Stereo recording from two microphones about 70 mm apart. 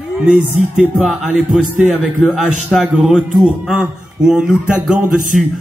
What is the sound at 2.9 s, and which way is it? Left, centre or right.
Speech, centre.